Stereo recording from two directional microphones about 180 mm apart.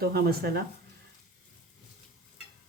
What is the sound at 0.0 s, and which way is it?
Speech, 60° right (ahead or behind).